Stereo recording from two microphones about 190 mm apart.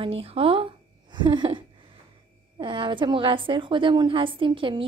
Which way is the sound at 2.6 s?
25° right (ahead or behind).